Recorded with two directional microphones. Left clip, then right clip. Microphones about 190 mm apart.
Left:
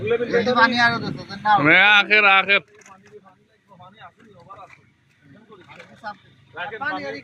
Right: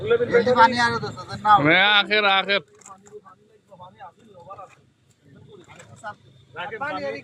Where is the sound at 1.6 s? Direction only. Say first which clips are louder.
Left 3 dB; centre (ahead or behind).